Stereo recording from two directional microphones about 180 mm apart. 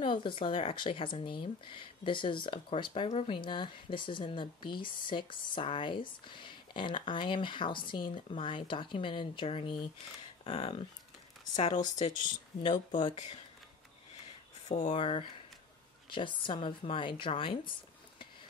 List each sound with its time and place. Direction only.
0.0 s speech: 25° left (ahead or behind)
11.8 s speech: 45° left (ahead or behind)
12.9 s speech: 25° left (ahead or behind)
14.8 s speech: 35° left (ahead or behind)